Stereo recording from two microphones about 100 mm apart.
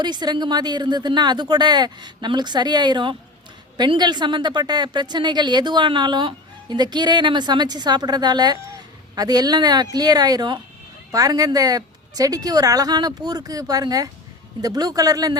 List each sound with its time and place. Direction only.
0.0 s a woman's voice: 45° right (ahead or behind)